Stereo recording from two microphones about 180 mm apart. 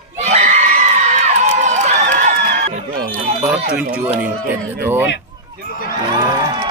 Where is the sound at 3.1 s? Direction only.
35° right (ahead or behind).